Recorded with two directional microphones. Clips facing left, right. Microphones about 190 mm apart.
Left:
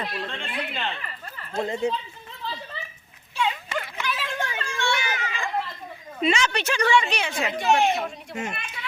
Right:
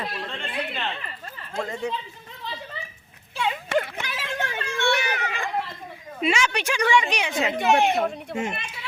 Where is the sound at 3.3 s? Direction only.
55° right (ahead or behind).